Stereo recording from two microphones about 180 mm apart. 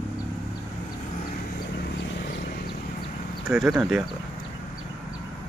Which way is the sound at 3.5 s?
Centre (ahead or behind).